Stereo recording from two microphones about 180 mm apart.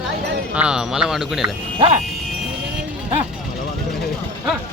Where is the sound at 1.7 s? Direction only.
30° right (ahead or behind).